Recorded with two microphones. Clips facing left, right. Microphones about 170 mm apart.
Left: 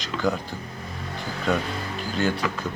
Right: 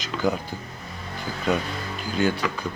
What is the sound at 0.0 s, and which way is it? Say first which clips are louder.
Speech: right 1 dB; centre (ahead or behind).